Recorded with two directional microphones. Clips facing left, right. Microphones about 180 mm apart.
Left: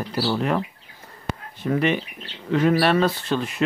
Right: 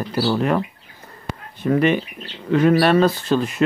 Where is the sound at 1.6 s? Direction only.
50° right (ahead or behind).